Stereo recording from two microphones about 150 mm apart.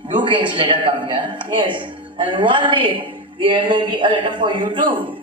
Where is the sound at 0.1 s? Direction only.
30° right (ahead or behind).